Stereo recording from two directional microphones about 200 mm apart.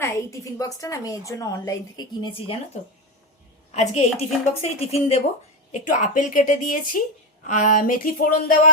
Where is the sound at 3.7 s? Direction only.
35° left (ahead or behind).